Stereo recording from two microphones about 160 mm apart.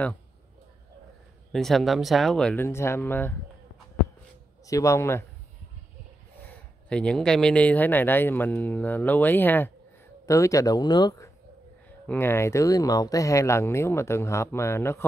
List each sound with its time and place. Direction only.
1.5 s speech: centre (ahead or behind)
4.6 s speech: 20° left (ahead or behind)
6.4 s speech: 5° left (ahead or behind); by 11.2 s 25° left (ahead or behind)
12.1 s speech: 15° left (ahead or behind)